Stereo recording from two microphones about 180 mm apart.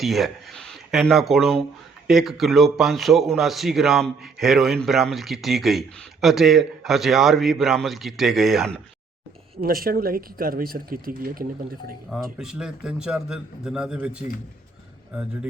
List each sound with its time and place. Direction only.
0.0 s speech: centre (ahead or behind)
9.6 s speech: 55° right (ahead or behind)
12.1 s speech: 5° right (ahead or behind)